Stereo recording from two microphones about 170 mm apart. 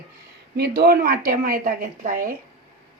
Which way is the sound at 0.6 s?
70° right (ahead or behind).